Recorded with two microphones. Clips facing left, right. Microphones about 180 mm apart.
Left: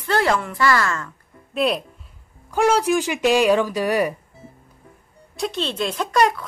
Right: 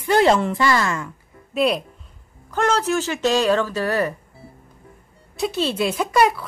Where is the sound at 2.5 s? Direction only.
10° left (ahead or behind).